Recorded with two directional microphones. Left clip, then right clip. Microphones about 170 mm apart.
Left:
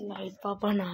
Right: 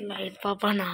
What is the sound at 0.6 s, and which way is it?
Speech, 20° left (ahead or behind).